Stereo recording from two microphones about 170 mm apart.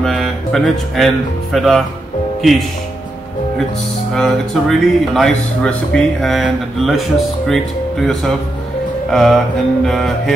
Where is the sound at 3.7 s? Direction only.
40° left (ahead or behind).